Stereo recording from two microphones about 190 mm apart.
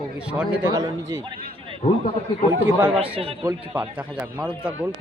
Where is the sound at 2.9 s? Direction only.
30° right (ahead or behind).